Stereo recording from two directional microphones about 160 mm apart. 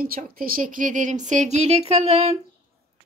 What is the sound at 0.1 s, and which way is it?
Speech, 60° right (ahead or behind).